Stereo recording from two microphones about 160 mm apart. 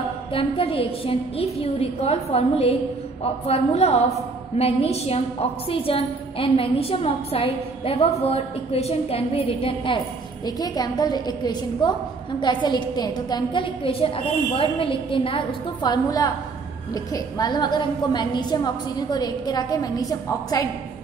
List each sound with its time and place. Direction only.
0.3 s a woman's voice: 35° left (ahead or behind)
10.4 s a woman's voice: 25° left (ahead or behind)